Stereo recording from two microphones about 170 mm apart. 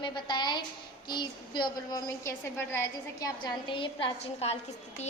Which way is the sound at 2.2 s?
15° left (ahead or behind).